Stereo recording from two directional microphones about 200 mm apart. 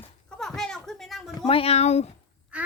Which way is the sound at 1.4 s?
30° left (ahead or behind).